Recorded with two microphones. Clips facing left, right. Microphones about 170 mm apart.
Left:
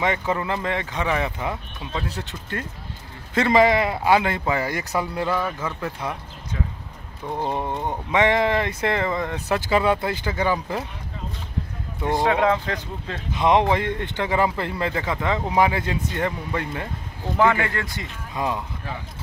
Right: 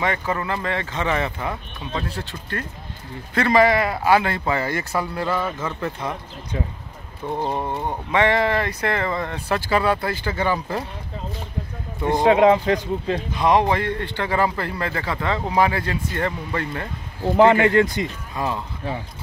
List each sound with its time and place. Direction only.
0.0 s speech: 15° left (ahead or behind)
7.2 s speech: 15° right (ahead or behind)
7.6 s speech: 5° right (ahead or behind)
8.1 s speech: 15° left (ahead or behind)
12.1 s speech: 20° right (ahead or behind)
13.4 s speech: 20° left (ahead or behind)
17.4 s speech: 20° right (ahead or behind)
18.3 s speech: 15° left (ahead or behind)